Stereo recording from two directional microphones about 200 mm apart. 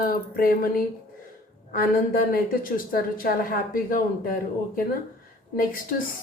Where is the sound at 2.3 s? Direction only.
45° left (ahead or behind).